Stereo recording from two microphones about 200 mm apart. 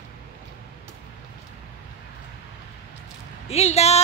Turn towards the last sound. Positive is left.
turn(degrees=30)  # may be behind; listen again after turning